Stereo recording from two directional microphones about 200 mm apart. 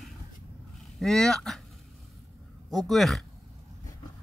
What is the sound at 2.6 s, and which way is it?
Speech, centre (ahead or behind).